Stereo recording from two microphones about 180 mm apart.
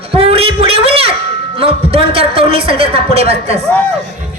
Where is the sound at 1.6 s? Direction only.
30° right (ahead or behind).